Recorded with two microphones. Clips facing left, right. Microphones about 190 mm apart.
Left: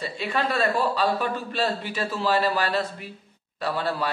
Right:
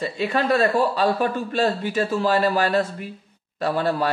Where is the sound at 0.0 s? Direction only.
45° right (ahead or behind).